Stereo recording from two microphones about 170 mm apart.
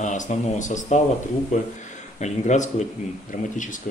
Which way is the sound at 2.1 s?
45° left (ahead or behind).